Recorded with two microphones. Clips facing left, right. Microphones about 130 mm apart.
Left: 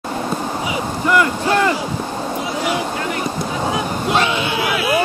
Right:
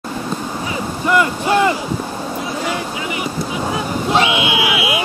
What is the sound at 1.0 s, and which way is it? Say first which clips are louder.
Speech: right 1 dB; 20° right (ahead or behind).